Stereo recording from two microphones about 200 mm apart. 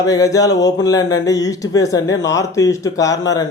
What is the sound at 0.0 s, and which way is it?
Speech, 15° left (ahead or behind).